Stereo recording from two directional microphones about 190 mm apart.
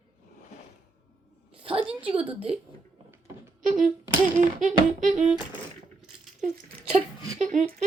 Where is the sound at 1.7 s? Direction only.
30° right (ahead or behind).